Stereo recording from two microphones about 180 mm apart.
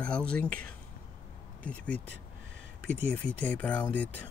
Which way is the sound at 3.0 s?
5° left (ahead or behind).